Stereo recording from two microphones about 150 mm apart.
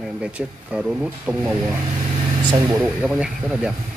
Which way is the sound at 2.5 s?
25° right (ahead or behind).